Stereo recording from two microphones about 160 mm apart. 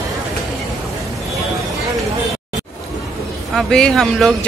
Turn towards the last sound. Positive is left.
turn(degrees=5)  # may be behind; listen again after turning